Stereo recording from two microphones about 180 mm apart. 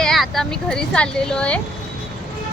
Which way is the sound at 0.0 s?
Centre (ahead or behind).